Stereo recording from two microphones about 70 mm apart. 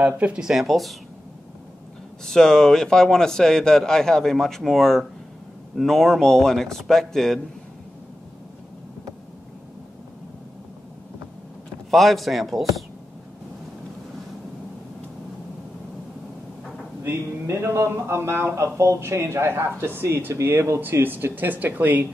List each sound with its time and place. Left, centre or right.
0.2 s speech: centre
2.2 s a man's voice: centre
11.9 s speech: centre
17.0 s speech: right
20.8 s speech: right